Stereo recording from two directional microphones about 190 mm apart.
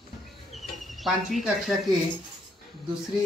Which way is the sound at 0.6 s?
Centre (ahead or behind).